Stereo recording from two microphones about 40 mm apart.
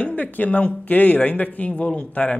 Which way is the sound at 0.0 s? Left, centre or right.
Left.